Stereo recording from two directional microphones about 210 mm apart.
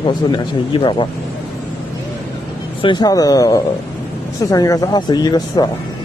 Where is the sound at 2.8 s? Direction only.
20° left (ahead or behind).